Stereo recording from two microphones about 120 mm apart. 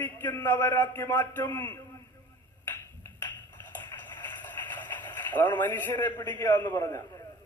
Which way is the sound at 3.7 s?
15° left (ahead or behind).